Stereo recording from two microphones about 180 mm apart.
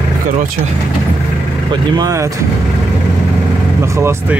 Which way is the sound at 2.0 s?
15° right (ahead or behind).